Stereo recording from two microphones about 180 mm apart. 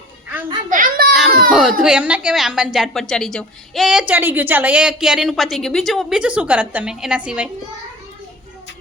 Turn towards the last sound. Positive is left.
turn(degrees=-5)  # may be behind; listen again after turning